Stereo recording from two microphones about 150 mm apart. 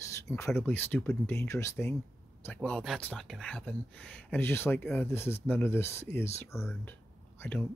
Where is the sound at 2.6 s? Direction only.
5° left (ahead or behind).